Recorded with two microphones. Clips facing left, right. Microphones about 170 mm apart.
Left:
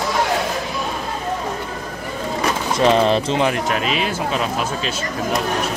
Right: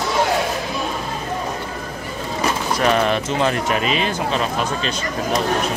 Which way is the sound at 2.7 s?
30° left (ahead or behind).